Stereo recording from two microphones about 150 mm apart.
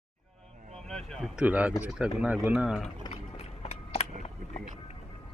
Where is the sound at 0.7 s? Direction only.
5° left (ahead or behind).